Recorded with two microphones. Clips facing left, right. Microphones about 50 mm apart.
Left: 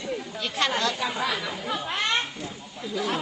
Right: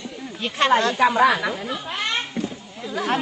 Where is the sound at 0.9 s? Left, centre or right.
Right.